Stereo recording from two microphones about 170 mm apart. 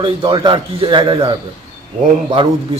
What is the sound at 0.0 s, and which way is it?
A man's voice, 30° right (ahead or behind).